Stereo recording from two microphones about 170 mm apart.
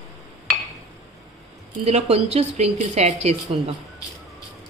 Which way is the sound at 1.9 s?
40° right (ahead or behind).